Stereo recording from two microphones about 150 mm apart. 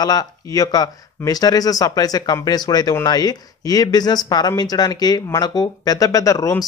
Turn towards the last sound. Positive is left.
turn(degrees=20)  # may be behind; listen again after turning